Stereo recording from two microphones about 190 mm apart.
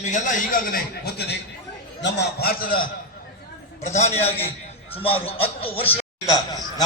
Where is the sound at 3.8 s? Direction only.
40° left (ahead or behind); by 6.6 s 20° left (ahead or behind).